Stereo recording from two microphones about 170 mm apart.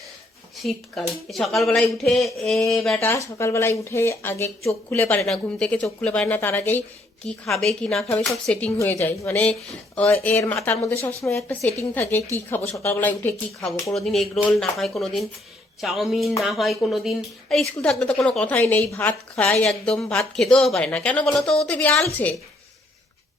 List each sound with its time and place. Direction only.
0.6 s speech: centre (ahead or behind)
3.1 s speech: 15° left (ahead or behind)